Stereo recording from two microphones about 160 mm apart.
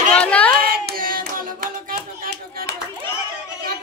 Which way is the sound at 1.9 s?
65° right (ahead or behind).